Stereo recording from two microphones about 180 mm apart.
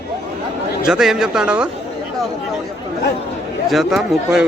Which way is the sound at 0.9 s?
5° right (ahead or behind).